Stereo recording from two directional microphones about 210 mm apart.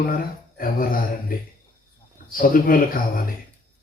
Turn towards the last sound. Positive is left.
turn(degrees=40)  # may be behind; listen again after turning